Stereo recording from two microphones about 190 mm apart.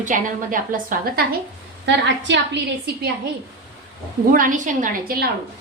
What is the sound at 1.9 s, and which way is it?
Speech, 70° right (ahead or behind).